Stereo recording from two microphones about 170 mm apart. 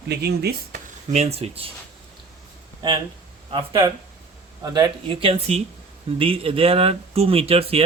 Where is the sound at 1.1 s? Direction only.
40° right (ahead or behind).